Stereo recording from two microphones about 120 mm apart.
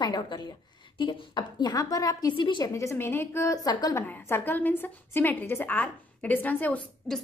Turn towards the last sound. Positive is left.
turn(degrees=10)  # may be behind; listen again after turning